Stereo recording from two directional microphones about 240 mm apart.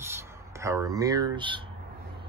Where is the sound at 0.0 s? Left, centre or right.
Centre.